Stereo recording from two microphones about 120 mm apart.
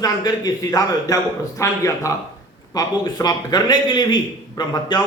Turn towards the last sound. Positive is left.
turn(degrees=40)  # may be behind; listen again after turning